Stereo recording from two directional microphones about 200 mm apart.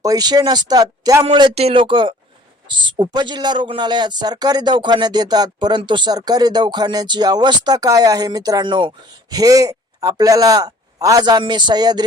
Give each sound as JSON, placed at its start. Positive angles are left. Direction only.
{"t": 0.0, "sound": "a man's voice", "side_deg": -20}